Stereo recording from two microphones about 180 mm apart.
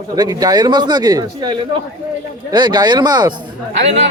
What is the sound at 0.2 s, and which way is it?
Speech, 20° right (ahead or behind).